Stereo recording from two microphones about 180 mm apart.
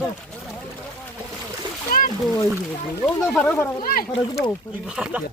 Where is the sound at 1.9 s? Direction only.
50° left (ahead or behind).